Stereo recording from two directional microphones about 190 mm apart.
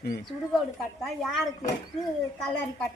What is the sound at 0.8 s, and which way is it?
Speech, centre (ahead or behind).